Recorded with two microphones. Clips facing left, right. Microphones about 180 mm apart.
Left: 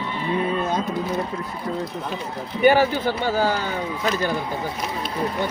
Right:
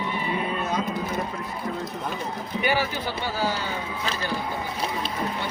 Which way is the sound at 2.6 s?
50° left (ahead or behind).